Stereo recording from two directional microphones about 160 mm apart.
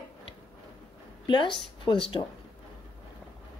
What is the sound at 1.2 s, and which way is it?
Speech, 30° left (ahead or behind).